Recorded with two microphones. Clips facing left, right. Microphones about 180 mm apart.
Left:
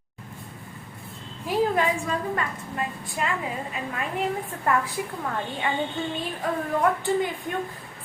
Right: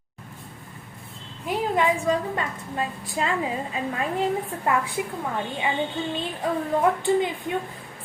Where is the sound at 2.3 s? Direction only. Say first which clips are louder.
Right 1 dB; 25° right (ahead or behind).